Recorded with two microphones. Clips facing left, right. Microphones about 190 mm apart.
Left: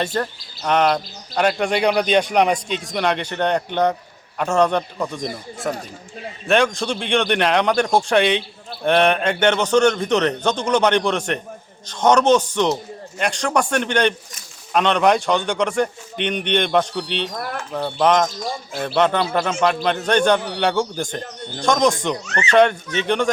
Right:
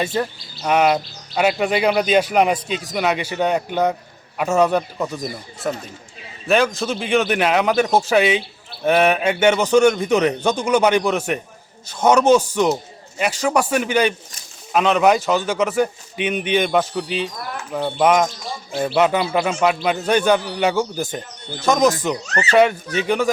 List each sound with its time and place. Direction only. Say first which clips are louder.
0.0 s speech: right 1 dB; 5° right (ahead or behind)
22.3 s speech: right 1 dB; 35° right (ahead or behind)
23.0 s speech: right 1 dB; 5° right (ahead or behind)